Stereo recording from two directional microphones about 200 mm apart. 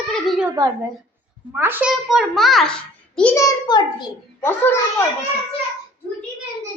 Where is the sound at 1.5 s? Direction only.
10° right (ahead or behind); by 4.7 s 15° left (ahead or behind).